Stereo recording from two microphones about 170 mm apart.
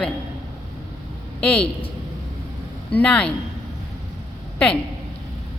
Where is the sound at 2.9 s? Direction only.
5° left (ahead or behind).